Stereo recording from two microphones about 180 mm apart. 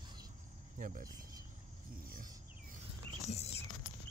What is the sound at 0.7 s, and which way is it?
Speech, 45° right (ahead or behind).